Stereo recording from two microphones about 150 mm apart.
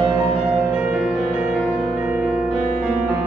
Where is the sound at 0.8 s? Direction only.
5° right (ahead or behind).